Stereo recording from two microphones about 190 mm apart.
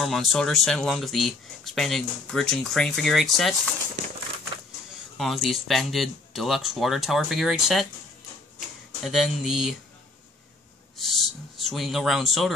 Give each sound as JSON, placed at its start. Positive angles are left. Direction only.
{"t": 0.0, "sound": "speech", "side_deg": 0}
{"t": 5.1, "sound": "speech", "side_deg": 0}
{"t": 11.0, "sound": "speech", "side_deg": 0}